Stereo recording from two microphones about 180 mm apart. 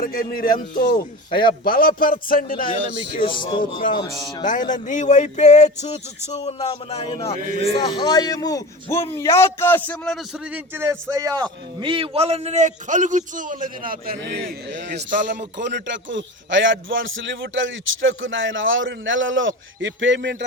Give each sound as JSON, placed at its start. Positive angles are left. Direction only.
{"t": 0.0, "sound": "a man's voice", "side_deg": 50}
{"t": 3.2, "sound": "speech", "side_deg": 25}
{"t": 3.6, "sound": "a man's voice", "side_deg": 50}
{"t": 7.3, "sound": "a man's voice", "side_deg": -45}
{"t": 7.8, "sound": "a man's voice", "side_deg": 25}
{"t": 10.5, "sound": "a man's voice", "side_deg": -10}
{"t": 14.7, "sound": "a man's voice", "side_deg": -80}